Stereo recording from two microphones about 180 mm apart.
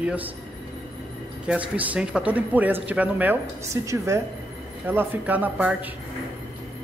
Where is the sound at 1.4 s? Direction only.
10° right (ahead or behind).